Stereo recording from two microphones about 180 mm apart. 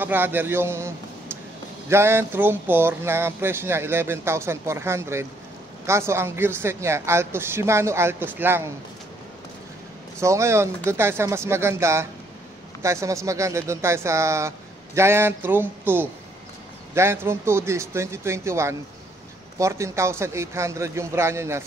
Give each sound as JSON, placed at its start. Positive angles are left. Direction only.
{"t": 0.0, "sound": "speech", "side_deg": -10}
{"t": 10.2, "sound": "speech", "side_deg": -15}